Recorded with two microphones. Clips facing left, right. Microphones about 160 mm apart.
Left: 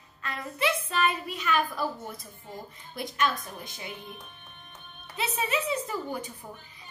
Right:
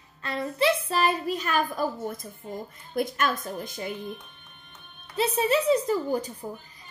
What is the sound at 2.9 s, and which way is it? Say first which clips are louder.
Speech: right 3 dB; 50° right (ahead or behind).